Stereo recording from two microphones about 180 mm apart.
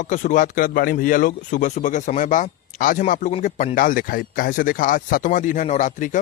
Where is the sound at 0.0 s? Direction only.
45° left (ahead or behind).